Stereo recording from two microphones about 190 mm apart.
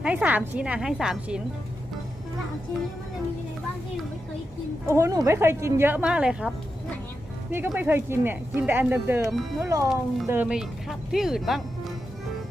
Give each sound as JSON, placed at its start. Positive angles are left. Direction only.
{"t": 0.0, "sound": "a woman's voice", "side_deg": -5}
{"t": 4.9, "sound": "speech", "side_deg": -15}
{"t": 7.5, "sound": "speech", "side_deg": -10}
{"t": 9.3, "sound": "a woman's voice", "side_deg": 0}
{"t": 9.6, "sound": "a woman's voice", "side_deg": -15}